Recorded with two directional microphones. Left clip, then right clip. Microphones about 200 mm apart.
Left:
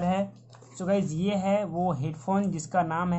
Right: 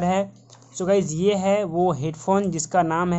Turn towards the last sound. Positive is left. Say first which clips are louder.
# right 6 dB
turn(degrees=-50)  # may be behind; listen again after turning